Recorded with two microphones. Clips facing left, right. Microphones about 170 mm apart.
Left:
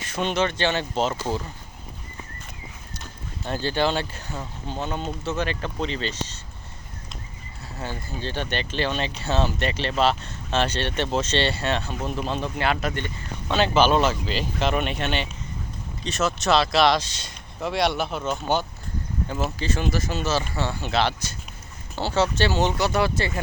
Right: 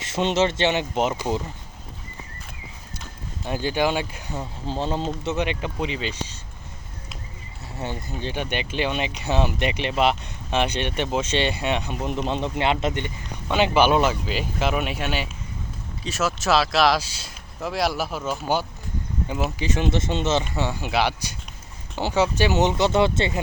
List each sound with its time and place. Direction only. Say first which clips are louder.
0.0 s speech: right 3 dB; 25° right (ahead or behind)
3.4 s speech: right 1 dB; 10° right (ahead or behind)
4.6 s speech: right 4 dB; 30° right (ahead or behind); by 6.4 s 10° right (ahead or behind)
7.8 s speech: right 2 dB; 20° right (ahead or behind)
19.5 s speech: right 2 dB; 15° right (ahead or behind)
20.6 s speech: right 1 dB; 15° right (ahead or behind)